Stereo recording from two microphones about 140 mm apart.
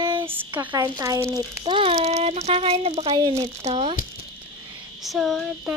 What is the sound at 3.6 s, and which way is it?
Speech, 45° right (ahead or behind).